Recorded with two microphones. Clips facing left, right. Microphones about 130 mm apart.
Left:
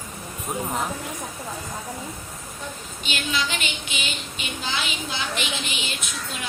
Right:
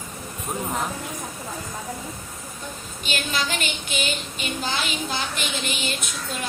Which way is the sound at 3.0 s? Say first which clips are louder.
Even; 45° right (ahead or behind).